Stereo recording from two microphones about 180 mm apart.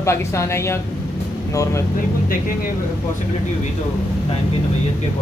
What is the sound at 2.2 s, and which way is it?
Speech, 50° left (ahead or behind).